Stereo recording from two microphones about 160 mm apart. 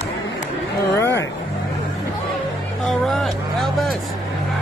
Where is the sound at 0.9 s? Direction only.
15° left (ahead or behind).